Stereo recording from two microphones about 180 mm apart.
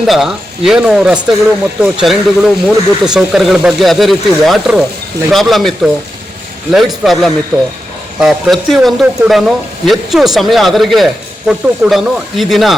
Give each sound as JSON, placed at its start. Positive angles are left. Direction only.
{"t": 0.1, "sound": "speech", "side_deg": 0}